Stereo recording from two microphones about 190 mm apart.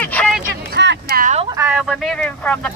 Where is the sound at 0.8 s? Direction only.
55° right (ahead or behind).